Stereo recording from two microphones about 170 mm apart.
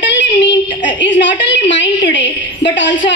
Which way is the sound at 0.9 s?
90° left.